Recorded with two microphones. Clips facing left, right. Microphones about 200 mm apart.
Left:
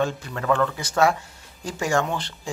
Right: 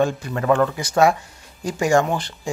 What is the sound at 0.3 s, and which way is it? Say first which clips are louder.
Speech: right 4 dB; 25° right (ahead or behind).